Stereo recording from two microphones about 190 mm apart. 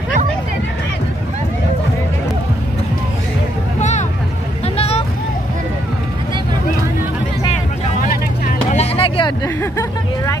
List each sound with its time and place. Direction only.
4.7 s vehicle: 30° left (ahead or behind)
8.7 s vehicle: 30° left (ahead or behind)
9.6 s hubbub: 15° left (ahead or behind)